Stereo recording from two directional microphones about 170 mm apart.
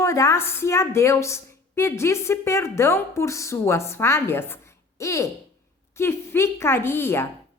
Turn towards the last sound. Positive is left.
turn(degrees=15)  # may be behind; listen again after turning